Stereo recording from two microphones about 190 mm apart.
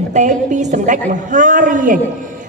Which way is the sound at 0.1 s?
40° right (ahead or behind).